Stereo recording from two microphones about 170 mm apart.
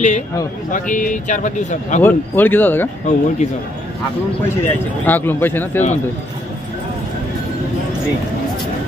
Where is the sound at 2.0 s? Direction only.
10° left (ahead or behind).